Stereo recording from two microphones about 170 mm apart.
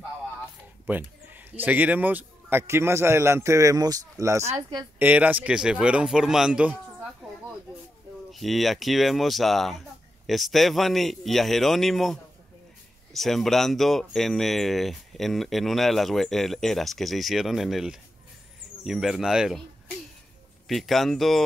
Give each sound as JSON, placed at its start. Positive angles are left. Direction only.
{"t": 0.8, "sound": "a woman's voice", "side_deg": -10}
{"t": 4.9, "sound": "a man's voice", "side_deg": -10}
{"t": 8.3, "sound": "speech", "side_deg": 0}
{"t": 20.6, "sound": "speech", "side_deg": 0}